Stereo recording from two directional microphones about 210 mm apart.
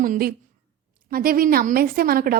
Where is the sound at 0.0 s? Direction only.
45° right (ahead or behind).